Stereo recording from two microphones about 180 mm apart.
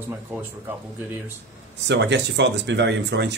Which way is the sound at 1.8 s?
75° right (ahead or behind).